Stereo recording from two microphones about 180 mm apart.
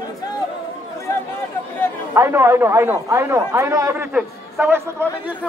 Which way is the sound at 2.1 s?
15° right (ahead or behind).